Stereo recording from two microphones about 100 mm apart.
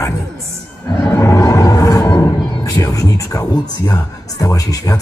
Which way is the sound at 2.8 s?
35° left (ahead or behind).